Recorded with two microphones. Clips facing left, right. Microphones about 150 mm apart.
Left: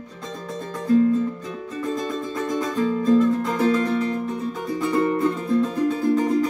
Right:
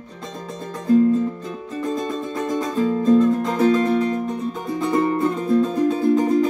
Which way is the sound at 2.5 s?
20° right (ahead or behind).